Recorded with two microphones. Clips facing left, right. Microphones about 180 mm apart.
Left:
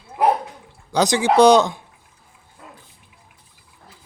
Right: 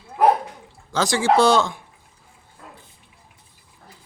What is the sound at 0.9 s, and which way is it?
Speech, 20° left (ahead or behind).